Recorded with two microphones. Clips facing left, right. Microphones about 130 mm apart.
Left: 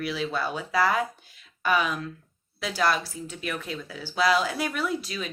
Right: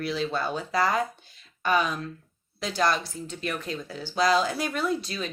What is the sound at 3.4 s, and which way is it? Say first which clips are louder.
Speech: right 1 dB; 40° right (ahead or behind).